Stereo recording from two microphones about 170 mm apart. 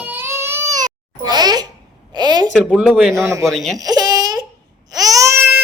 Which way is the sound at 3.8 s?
25° right (ahead or behind).